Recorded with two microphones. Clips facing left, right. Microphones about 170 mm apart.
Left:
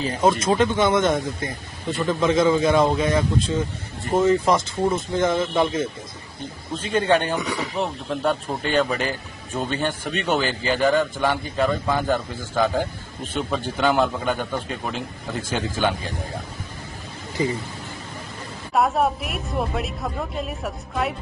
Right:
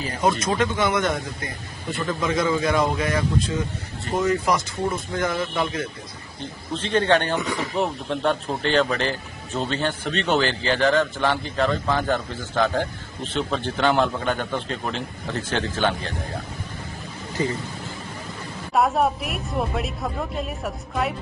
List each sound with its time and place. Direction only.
0.0 s speech: 25° left (ahead or behind)
6.7 s speech: 10° left (ahead or behind)
7.7 s speech: centre (ahead or behind)
18.7 s a woman's voice: centre (ahead or behind)